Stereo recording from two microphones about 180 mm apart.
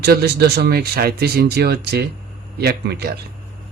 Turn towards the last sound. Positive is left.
turn(degrees=-60)  # may be behind; listen again after turning